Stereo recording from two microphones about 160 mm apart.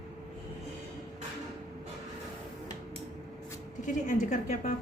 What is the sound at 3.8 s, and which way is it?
Speech, 50° left (ahead or behind).